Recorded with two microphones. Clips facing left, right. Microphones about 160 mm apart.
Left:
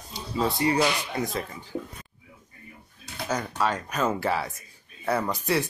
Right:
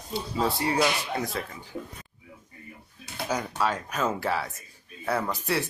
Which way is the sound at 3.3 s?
5° right (ahead or behind).